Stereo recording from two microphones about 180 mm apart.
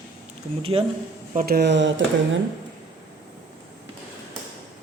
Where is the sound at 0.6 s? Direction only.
30° right (ahead or behind).